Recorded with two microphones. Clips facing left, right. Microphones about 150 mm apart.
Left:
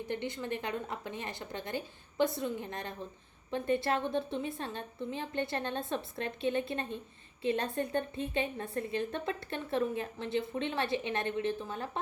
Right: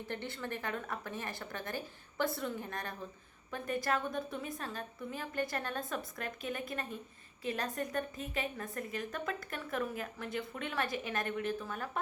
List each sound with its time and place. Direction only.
0.1 s a woman's voice: 20° left (ahead or behind)